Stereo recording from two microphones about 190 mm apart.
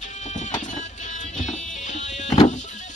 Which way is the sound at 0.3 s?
40° left (ahead or behind).